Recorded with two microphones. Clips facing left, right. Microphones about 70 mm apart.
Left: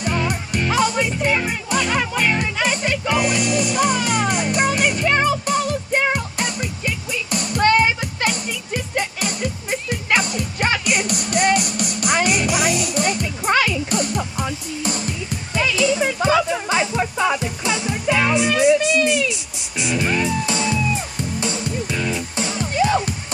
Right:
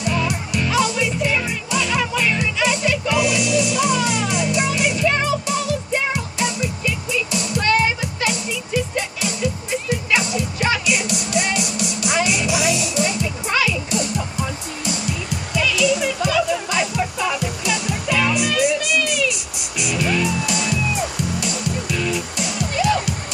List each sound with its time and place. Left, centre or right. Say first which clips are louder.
0.0 s music: even; left